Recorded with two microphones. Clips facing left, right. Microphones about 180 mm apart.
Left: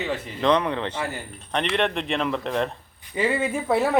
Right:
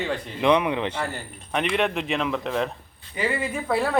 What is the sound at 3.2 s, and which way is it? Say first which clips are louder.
Speech: left 3 dB; 25° left (ahead or behind).